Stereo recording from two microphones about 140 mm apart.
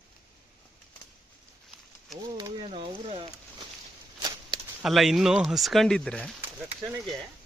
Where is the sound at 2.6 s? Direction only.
40° right (ahead or behind).